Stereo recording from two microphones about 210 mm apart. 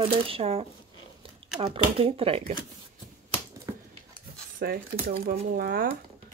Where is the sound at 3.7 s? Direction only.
15° right (ahead or behind).